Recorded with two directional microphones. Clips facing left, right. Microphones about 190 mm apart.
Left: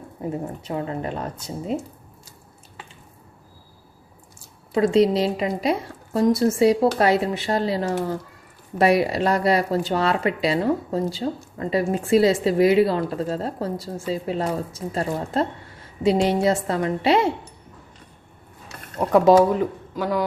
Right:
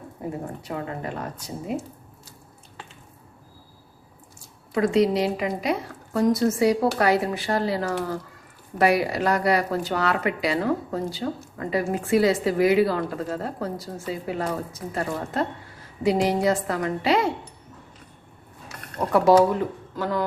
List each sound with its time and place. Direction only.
0.6 s speech: 25° left (ahead or behind)
4.7 s speech: 25° left (ahead or behind)
18.9 s speech: 20° left (ahead or behind)